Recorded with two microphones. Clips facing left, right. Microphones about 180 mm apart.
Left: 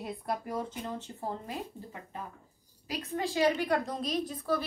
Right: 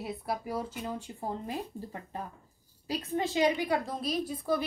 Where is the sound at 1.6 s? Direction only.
35° right (ahead or behind).